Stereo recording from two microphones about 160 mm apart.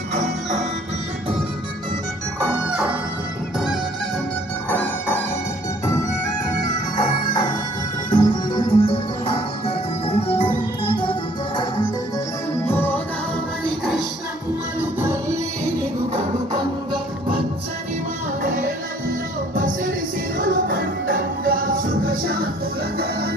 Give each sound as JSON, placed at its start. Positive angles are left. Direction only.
{"t": 4.7, "sound": "music", "side_deg": 10}
{"t": 12.6, "sound": "music", "side_deg": 10}
{"t": 19.5, "sound": "music", "side_deg": -55}